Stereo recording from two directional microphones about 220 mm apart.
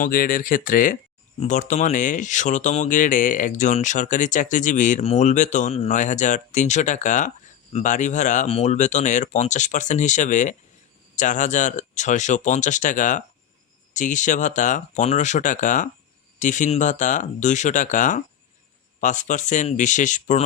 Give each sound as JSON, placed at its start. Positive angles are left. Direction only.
{"t": 0.0, "sound": "speech", "side_deg": 40}